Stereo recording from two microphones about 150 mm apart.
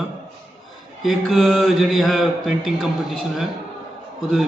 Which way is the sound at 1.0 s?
Centre (ahead or behind).